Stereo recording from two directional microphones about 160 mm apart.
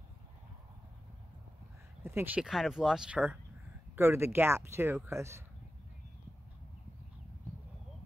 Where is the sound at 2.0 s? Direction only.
15° right (ahead or behind).